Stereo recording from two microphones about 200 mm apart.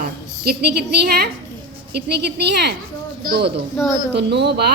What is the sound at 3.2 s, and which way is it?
Speech, 50° right (ahead or behind).